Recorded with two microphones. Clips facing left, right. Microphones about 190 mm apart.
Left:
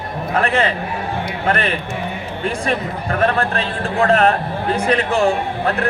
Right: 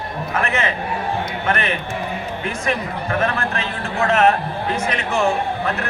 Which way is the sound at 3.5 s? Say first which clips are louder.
Left 4 dB; 35° left (ahead or behind).